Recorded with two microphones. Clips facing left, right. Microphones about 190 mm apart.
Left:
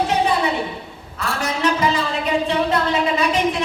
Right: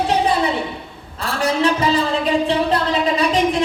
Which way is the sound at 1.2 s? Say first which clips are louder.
Right 3 dB; 30° right (ahead or behind).